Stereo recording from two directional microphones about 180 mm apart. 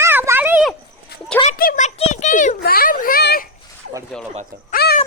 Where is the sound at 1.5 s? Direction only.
50° left (ahead or behind).